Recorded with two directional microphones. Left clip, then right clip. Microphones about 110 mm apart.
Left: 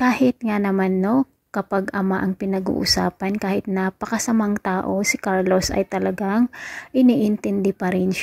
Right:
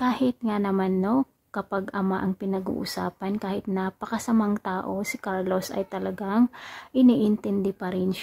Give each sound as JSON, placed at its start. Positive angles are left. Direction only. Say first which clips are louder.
{"t": 0.0, "sound": "a woman's voice", "louder": "left 6 dB", "side_deg": 30}